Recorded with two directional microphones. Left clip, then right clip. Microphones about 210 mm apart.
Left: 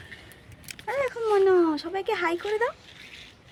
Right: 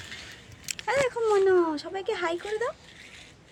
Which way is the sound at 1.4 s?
20° left (ahead or behind).